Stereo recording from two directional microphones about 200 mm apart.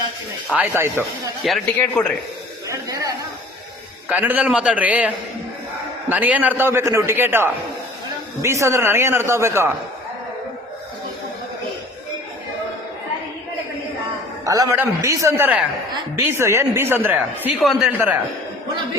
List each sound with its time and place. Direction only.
0.5 s speech: 10° right (ahead or behind)
1.4 s a man's voice: centre (ahead or behind)
2.6 s a sound: 15° right (ahead or behind)
4.1 s speech: 10° right (ahead or behind)
14.4 s speech: 15° right (ahead or behind)